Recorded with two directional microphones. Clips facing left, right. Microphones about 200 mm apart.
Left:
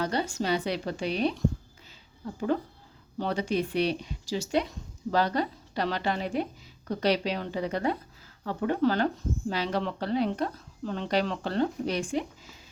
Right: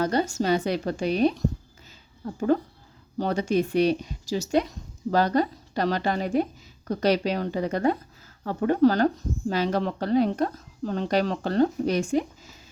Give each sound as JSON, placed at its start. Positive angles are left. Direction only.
{"t": 0.0, "sound": "speech", "side_deg": -45}
{"t": 3.2, "sound": "speech", "side_deg": -45}